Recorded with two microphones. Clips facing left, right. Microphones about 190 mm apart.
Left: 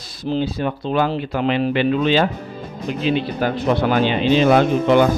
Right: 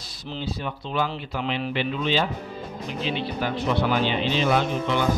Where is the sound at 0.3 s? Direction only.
45° left (ahead or behind).